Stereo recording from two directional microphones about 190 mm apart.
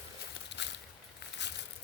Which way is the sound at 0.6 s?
65° left (ahead or behind).